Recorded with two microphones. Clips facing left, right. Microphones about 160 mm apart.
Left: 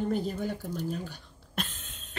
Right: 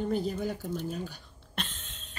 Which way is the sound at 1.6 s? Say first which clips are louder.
Left 2 dB; 10° left (ahead or behind).